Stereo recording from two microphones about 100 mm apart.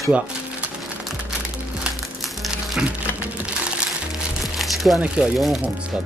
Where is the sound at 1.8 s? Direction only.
5° right (ahead or behind).